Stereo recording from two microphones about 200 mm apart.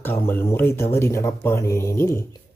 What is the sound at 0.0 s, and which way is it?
Speech, 10° left (ahead or behind).